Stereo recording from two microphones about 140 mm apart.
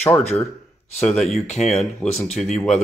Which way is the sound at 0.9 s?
Centre (ahead or behind).